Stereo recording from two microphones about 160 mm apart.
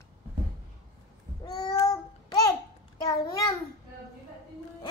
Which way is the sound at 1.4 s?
25° left (ahead or behind).